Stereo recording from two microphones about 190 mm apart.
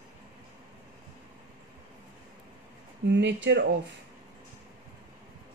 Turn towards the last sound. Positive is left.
turn(degrees=-65)  # may be behind; listen again after turning